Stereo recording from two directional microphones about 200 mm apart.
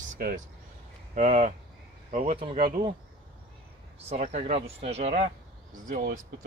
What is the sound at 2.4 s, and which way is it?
Speech, 25° right (ahead or behind).